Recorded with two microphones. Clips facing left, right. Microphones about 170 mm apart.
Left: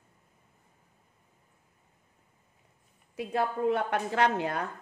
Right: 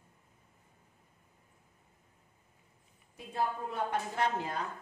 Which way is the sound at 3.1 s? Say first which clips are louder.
Left 5 dB; 80° left.